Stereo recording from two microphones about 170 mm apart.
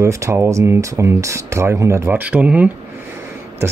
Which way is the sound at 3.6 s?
15° right (ahead or behind).